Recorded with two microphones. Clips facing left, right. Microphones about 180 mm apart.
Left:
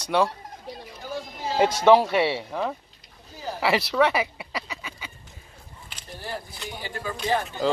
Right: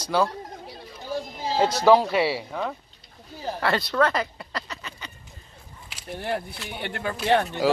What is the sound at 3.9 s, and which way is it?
Duck, 5° left (ahead or behind).